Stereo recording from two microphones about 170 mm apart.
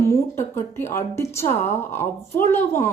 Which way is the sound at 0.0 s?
15° left (ahead or behind).